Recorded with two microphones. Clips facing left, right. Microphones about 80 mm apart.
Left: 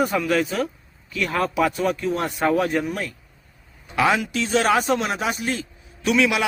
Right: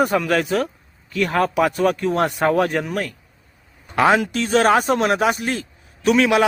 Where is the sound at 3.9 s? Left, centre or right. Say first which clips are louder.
Right 4 dB; right.